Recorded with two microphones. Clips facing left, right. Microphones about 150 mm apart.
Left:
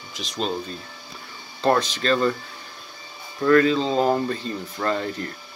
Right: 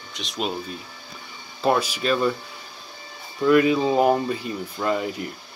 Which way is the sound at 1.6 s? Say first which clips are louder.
Left 1 dB; 10° right (ahead or behind).